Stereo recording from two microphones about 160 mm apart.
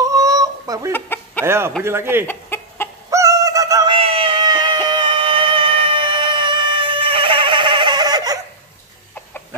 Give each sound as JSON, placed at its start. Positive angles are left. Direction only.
{"t": 0.0, "sound": "a sound", "side_deg": -20}
{"t": 0.9, "sound": "chicken", "side_deg": 15}
{"t": 1.4, "sound": "speech", "side_deg": -15}
{"t": 2.2, "sound": "chicken", "side_deg": 15}
{"t": 3.1, "sound": "synthetic singing", "side_deg": -20}
{"t": 3.9, "sound": "a sound", "side_deg": -35}